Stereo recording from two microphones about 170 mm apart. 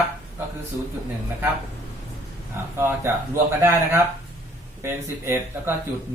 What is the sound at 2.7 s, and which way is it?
Speech, 15° right (ahead or behind).